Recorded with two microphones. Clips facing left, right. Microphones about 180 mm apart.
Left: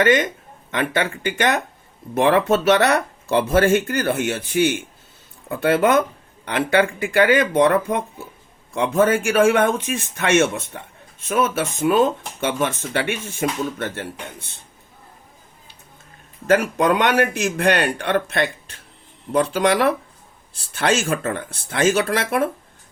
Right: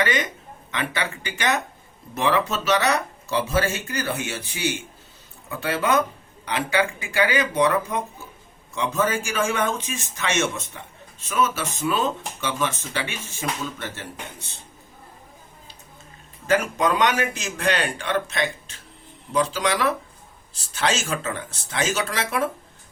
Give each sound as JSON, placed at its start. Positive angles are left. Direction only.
{"t": 0.0, "sound": "speech", "side_deg": 50}
{"t": 16.5, "sound": "speech", "side_deg": 60}